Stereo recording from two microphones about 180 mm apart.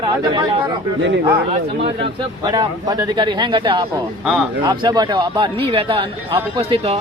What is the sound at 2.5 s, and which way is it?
A man's voice, 20° right (ahead or behind).